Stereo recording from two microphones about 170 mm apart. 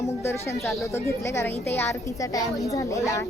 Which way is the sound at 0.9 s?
15° left (ahead or behind).